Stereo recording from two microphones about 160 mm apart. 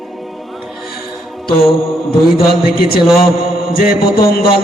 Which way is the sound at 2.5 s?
70° left (ahead or behind).